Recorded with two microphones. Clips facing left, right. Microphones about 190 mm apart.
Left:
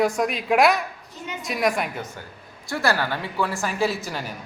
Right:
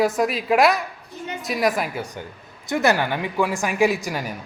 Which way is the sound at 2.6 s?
20° right (ahead or behind).